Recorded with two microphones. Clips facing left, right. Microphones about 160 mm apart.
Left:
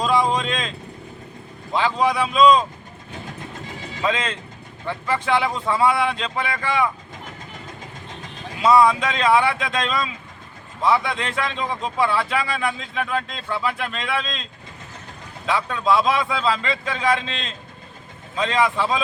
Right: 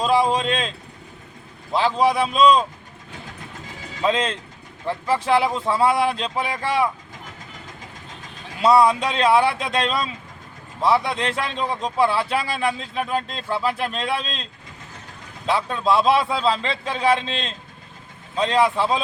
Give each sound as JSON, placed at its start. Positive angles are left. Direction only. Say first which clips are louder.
{"t": 0.0, "sound": "a man's voice", "louder": "right 1 dB", "side_deg": -30}
{"t": 1.7, "sound": "a man's voice", "louder": "right 1 dB", "side_deg": -35}
{"t": 4.0, "sound": "a man's voice", "louder": "right 3 dB", "side_deg": -35}
{"t": 8.6, "sound": "a man's voice", "louder": "even", "side_deg": -35}
{"t": 15.4, "sound": "a man's voice", "louder": "even", "side_deg": -35}